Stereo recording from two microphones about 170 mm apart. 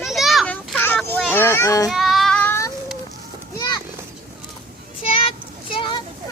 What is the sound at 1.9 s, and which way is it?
Child singing, centre (ahead or behind).